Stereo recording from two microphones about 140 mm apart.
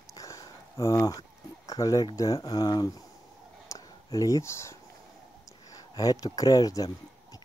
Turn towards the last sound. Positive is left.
turn(degrees=25)  # may be behind; listen again after turning